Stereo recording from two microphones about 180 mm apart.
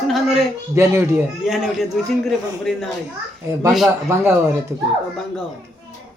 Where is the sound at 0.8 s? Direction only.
15° right (ahead or behind).